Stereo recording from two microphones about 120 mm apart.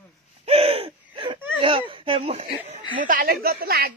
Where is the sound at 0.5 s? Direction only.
55° right (ahead or behind).